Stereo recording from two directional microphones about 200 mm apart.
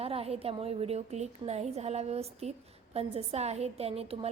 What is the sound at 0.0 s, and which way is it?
A woman's voice, 30° right (ahead or behind).